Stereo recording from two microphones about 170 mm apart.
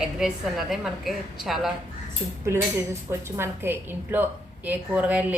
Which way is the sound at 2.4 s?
15° right (ahead or behind).